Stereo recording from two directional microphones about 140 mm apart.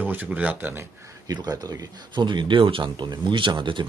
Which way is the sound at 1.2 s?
25° right (ahead or behind).